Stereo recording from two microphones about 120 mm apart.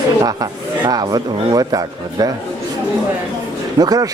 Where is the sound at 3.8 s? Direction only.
30° right (ahead or behind).